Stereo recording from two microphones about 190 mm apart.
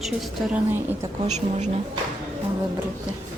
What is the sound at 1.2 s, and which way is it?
Speech, 40° right (ahead or behind).